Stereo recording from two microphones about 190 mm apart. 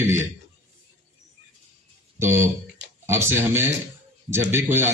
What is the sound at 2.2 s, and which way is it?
Speech, 10° right (ahead or behind).